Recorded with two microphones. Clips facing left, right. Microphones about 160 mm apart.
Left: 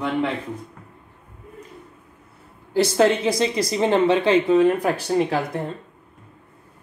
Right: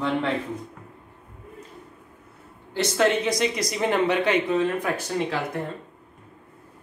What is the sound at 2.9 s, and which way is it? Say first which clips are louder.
Speech: left 2 dB; 30° left (ahead or behind).